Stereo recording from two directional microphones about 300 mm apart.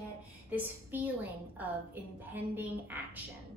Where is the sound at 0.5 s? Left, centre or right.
Centre.